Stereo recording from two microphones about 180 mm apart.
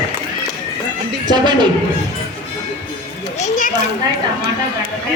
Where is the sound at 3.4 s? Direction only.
45° left (ahead or behind).